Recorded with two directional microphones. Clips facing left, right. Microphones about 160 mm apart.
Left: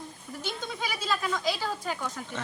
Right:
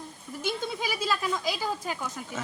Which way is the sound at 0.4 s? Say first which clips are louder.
Right 4 dB; 10° right (ahead or behind).